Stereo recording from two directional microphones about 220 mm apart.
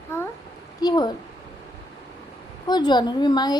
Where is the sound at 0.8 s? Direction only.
20° left (ahead or behind).